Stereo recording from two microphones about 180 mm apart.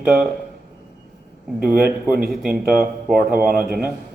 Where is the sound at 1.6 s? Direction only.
55° right (ahead or behind).